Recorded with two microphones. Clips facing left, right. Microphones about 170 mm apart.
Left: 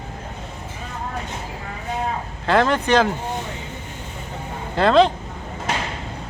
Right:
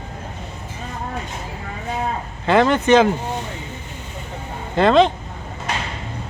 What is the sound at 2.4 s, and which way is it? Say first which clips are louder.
Speech: right 3 dB; centre (ahead or behind).